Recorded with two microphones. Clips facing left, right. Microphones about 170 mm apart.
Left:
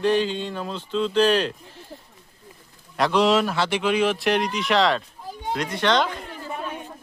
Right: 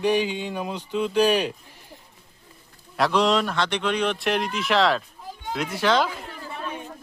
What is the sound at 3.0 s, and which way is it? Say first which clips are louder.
Speech: left 2 dB; centre (ahead or behind).